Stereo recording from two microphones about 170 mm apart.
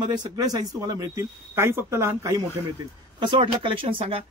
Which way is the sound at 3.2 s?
25° right (ahead or behind).